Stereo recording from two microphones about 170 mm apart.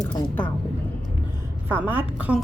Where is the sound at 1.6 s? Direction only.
10° right (ahead or behind).